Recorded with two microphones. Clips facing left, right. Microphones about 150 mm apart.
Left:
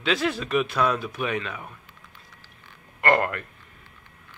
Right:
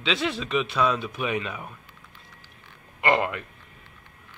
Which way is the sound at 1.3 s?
10° right (ahead or behind).